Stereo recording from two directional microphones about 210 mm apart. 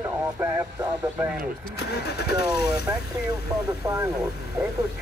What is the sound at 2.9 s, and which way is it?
Speech, 15° right (ahead or behind).